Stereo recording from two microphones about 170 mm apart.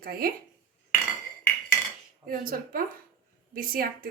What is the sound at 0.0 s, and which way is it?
Speech, 60° right (ahead or behind).